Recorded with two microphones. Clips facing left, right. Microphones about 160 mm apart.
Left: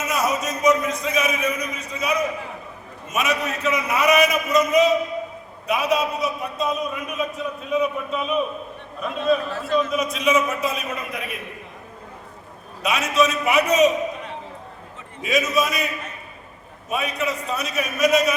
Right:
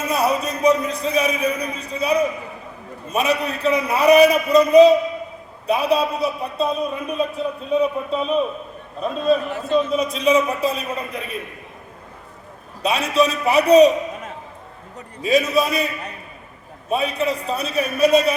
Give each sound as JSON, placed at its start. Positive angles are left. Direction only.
{"t": 0.0, "sound": "a man's voice", "side_deg": -30}
{"t": 9.5, "sound": "a man's voice", "side_deg": -20}
{"t": 9.9, "sound": "a man's voice", "side_deg": -30}
{"t": 12.8, "sound": "a man's voice", "side_deg": -30}